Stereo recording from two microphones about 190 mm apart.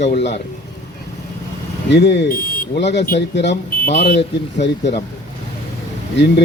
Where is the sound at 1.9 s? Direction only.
65° left (ahead or behind).